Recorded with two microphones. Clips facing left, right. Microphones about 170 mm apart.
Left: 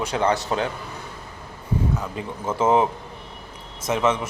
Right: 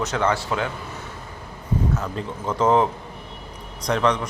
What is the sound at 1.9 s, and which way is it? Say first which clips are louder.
A man's voice: right 1 dB; 5° left (ahead or behind).